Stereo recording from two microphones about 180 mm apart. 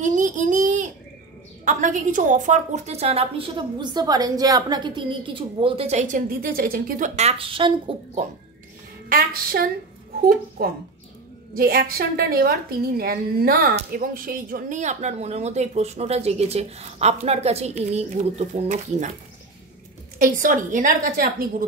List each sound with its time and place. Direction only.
0.0 s a sound: 45° right (ahead or behind)
1.6 s a woman's voice: 45° right (ahead or behind)
7.2 s speech: 35° right (ahead or behind)
9.1 s a woman's voice: 55° right (ahead or behind)
20.2 s a woman's voice: 50° right (ahead or behind)